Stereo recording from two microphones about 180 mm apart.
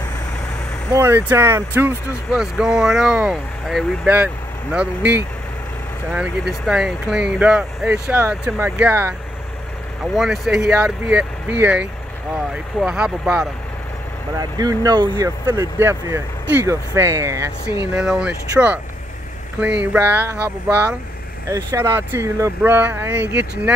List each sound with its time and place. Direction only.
0.9 s speech: 15° right (ahead or behind)
10.1 s speech: centre (ahead or behind)
14.6 s speech: 20° right (ahead or behind)
17.9 s speech: 5° right (ahead or behind)
19.8 s speech: 10° right (ahead or behind)